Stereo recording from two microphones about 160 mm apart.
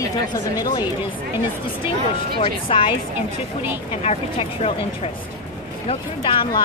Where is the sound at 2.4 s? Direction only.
35° left (ahead or behind).